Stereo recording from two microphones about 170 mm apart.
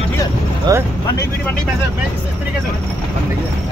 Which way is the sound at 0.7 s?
20° right (ahead or behind).